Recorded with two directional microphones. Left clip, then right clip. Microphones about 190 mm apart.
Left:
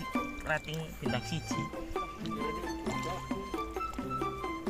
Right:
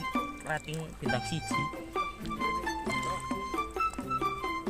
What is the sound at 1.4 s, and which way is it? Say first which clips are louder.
Music: right 4 dB; centre (ahead or behind).